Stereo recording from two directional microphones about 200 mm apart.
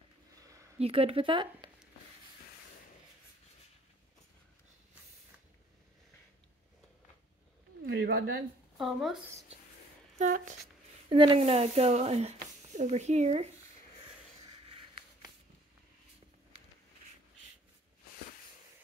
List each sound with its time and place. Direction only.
0.4 s a sound: 15° right (ahead or behind)
0.7 s speech: 30° right (ahead or behind)
7.8 s a sound: 60° right (ahead or behind)
8.7 s speech: centre (ahead or behind)
10.1 s speech: 40° right (ahead or behind)
11.1 s speech: 25° right (ahead or behind)